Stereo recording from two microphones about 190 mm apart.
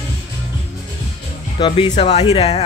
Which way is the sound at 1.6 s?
25° left (ahead or behind).